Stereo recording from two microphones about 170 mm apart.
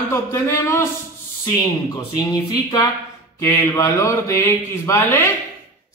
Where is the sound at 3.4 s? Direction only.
15° left (ahead or behind).